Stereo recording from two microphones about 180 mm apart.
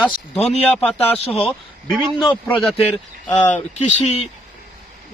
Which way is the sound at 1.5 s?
Centre (ahead or behind).